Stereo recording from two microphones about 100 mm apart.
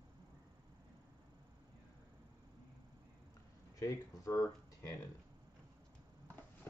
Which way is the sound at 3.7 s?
35° left (ahead or behind).